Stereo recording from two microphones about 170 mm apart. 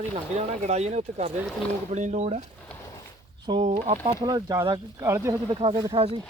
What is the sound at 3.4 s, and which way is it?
Speech, 30° right (ahead or behind).